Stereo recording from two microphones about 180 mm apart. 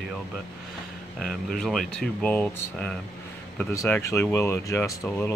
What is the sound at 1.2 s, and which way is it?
Speech, 5° left (ahead or behind).